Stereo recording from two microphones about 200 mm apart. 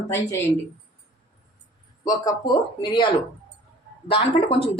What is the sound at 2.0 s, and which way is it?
A woman's voice, 20° left (ahead or behind).